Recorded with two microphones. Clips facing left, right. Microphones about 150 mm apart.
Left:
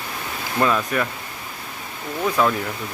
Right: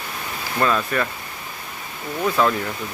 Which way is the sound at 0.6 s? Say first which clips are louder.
Even; 10° left (ahead or behind).